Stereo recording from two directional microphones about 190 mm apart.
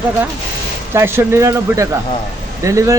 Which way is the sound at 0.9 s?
15° right (ahead or behind).